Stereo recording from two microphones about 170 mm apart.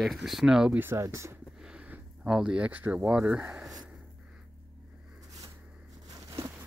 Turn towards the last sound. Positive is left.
turn(degrees=-20)  # may be behind; listen again after turning